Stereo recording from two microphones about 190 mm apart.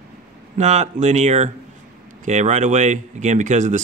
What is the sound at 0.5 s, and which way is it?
Speech, 35° right (ahead or behind).